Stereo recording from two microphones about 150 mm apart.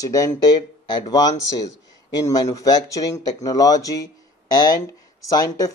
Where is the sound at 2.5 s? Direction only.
25° left (ahead or behind).